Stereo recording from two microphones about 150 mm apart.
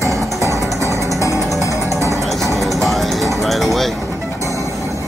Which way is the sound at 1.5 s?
20° left (ahead or behind).